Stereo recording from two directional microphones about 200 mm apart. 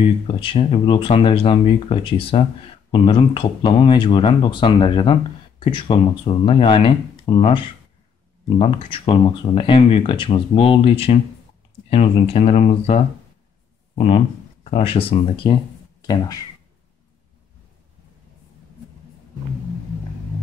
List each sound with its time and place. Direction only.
0.0 s speech: 25° left (ahead or behind)